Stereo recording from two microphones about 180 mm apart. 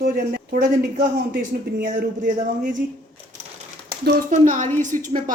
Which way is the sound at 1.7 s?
50° right (ahead or behind).